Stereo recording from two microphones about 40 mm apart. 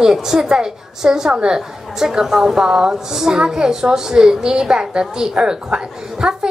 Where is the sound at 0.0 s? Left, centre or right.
Centre.